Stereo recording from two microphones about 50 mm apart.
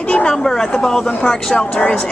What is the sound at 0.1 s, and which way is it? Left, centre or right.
Speech, left.